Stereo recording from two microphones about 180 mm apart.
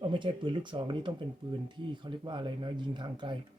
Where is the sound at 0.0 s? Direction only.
25° right (ahead or behind).